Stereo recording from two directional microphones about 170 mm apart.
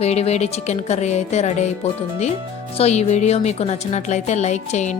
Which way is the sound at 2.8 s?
40° left (ahead or behind).